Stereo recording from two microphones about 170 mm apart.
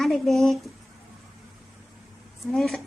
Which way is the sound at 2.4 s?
Centre (ahead or behind).